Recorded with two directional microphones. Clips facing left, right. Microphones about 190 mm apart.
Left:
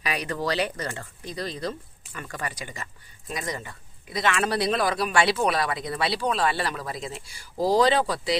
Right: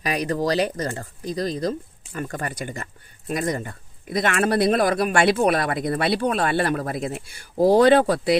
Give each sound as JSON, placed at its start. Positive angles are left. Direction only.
{"t": 0.0, "sound": "speech", "side_deg": -40}